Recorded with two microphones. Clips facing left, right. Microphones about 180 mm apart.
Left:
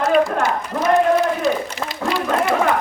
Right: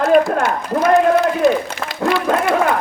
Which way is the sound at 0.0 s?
55° right (ahead or behind).